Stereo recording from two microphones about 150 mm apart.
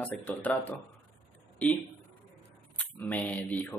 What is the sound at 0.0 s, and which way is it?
Speech, 10° left (ahead or behind).